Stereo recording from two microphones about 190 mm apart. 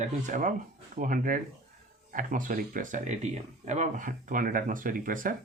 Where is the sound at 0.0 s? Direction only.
40° right (ahead or behind).